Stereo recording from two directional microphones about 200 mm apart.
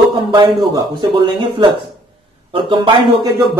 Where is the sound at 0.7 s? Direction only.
25° right (ahead or behind).